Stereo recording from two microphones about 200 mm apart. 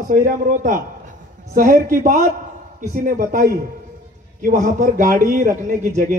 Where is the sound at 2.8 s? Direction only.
40° right (ahead or behind).